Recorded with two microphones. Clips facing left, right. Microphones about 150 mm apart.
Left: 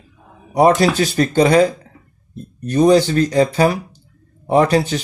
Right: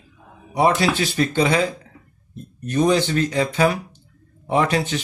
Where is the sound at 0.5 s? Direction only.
40° left (ahead or behind).